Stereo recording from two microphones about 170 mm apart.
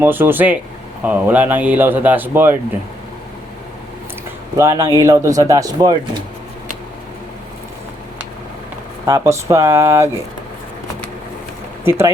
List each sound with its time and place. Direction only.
0.0 s speech: 10° right (ahead or behind)
4.5 s speech: 15° right (ahead or behind)
9.0 s speech: 15° right (ahead or behind)
11.9 s speech: 15° right (ahead or behind)